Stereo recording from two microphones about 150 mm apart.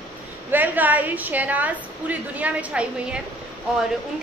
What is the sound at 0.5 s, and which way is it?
A woman's voice, 10° right (ahead or behind).